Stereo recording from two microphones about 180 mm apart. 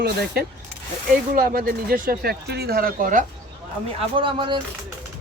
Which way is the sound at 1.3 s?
55° right (ahead or behind).